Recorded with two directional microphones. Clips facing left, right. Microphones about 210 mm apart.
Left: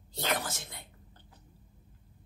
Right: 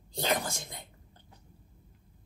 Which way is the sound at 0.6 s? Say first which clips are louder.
Right 3 dB; 15° right (ahead or behind).